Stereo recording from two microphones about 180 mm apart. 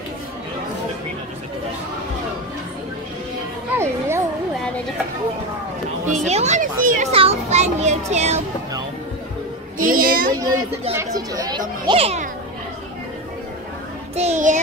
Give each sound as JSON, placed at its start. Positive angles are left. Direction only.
{"t": 3.7, "sound": "children playing", "side_deg": -15}
{"t": 6.0, "sound": "a child's voice", "side_deg": -40}
{"t": 9.8, "sound": "a child's voice", "side_deg": -50}
{"t": 10.4, "sound": "speech", "side_deg": -15}
{"t": 11.8, "sound": "a child's voice", "side_deg": -30}
{"t": 14.1, "sound": "a child's voice", "side_deg": -40}